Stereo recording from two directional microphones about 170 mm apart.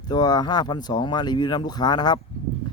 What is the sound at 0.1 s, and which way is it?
Speech, 25° left (ahead or behind).